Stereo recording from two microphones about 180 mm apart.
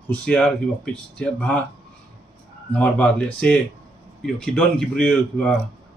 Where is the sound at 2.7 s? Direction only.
10° left (ahead or behind).